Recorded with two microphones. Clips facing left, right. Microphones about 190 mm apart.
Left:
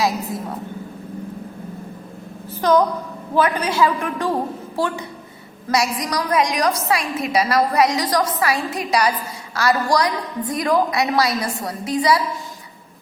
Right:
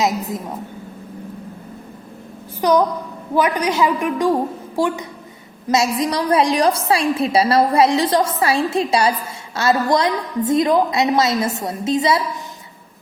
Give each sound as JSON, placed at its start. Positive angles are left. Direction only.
{"t": 0.0, "sound": "a woman's voice", "side_deg": -20}
{"t": 2.6, "sound": "a woman's voice", "side_deg": -15}